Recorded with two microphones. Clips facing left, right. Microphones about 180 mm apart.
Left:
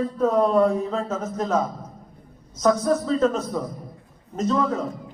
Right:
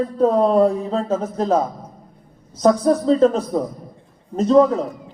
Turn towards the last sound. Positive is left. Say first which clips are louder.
# right 9 dB
turn(degrees=-30)  # may be behind; listen again after turning